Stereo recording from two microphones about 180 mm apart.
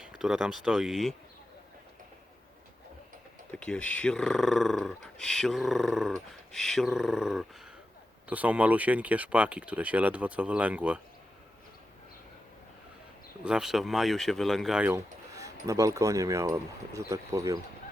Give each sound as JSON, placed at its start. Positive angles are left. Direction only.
{"t": 0.0, "sound": "speech", "side_deg": -5}
{"t": 3.5, "sound": "speech", "side_deg": 5}
{"t": 13.4, "sound": "speech", "side_deg": -5}